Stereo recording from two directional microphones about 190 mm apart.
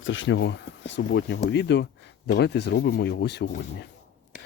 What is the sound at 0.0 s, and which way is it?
Speech, 80° left.